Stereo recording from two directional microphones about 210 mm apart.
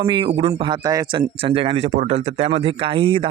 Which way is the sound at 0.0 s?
25° right (ahead or behind).